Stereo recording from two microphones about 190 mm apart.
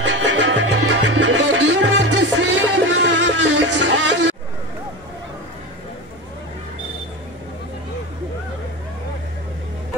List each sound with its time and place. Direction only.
0.0 s music: 70° right (ahead or behind)